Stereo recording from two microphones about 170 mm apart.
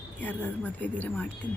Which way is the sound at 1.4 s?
10° right (ahead or behind).